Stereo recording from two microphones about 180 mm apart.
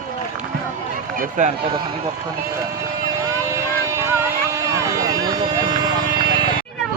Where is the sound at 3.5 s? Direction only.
15° right (ahead or behind).